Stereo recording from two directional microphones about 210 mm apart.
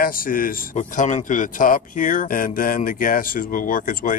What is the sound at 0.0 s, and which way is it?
A man's voice, 40° left (ahead or behind).